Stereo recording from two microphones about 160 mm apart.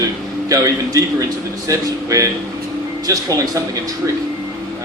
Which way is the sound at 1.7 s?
20° right (ahead or behind).